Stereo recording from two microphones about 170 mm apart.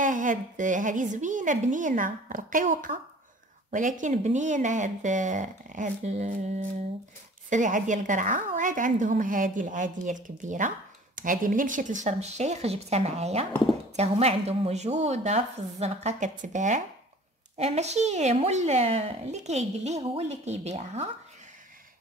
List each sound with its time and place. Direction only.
0.0 s a woman's voice: 50° right (ahead or behind)
7.4 s a woman's voice: 45° right (ahead or behind)